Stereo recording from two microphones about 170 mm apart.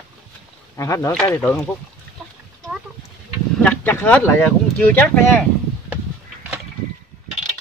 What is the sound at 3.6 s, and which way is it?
Speech, 10° left (ahead or behind).